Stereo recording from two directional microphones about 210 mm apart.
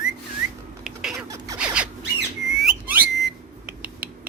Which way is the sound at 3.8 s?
45° right (ahead or behind).